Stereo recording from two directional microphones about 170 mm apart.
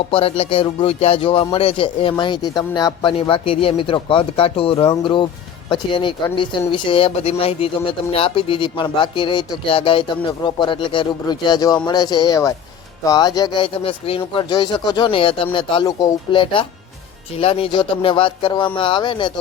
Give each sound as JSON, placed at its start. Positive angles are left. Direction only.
{"t": 0.1, "sound": "music", "side_deg": 30}
{"t": 1.5, "sound": "speech", "side_deg": 35}